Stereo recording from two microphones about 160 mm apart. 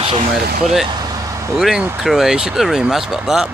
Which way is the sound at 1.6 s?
Centre (ahead or behind).